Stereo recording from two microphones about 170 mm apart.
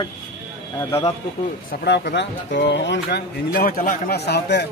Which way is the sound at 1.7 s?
75° left (ahead or behind).